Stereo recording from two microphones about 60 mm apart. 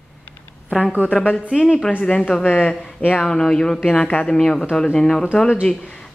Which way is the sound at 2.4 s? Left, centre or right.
Left.